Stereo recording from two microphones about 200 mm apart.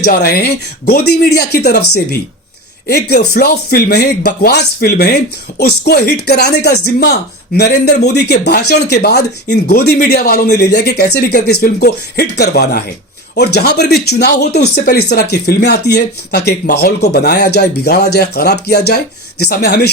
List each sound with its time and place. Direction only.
0.0 s speech: 55° left (ahead or behind)